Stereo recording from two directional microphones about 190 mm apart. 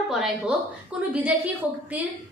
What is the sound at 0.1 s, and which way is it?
Speech, centre (ahead or behind).